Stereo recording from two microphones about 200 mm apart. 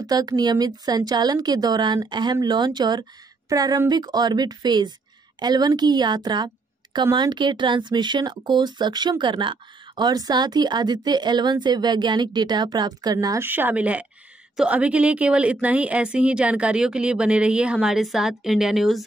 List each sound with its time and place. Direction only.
0.0 s a woman's voice: 20° right (ahead or behind); by 19.0 s centre (ahead or behind)